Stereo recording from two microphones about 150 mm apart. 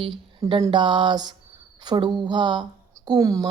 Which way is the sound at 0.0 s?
35° right (ahead or behind).